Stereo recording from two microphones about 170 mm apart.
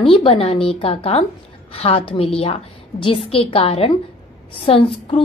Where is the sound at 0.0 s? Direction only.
35° left (ahead or behind).